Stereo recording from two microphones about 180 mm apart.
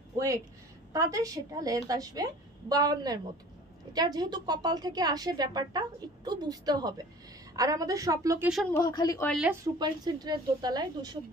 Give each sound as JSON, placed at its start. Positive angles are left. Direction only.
{"t": 0.9, "sound": "speech", "side_deg": -20}
{"t": 8.7, "sound": "a woman's voice", "side_deg": 20}
{"t": 9.8, "sound": "speech", "side_deg": -25}